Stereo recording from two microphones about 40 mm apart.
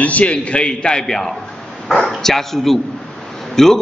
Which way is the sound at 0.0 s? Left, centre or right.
Left.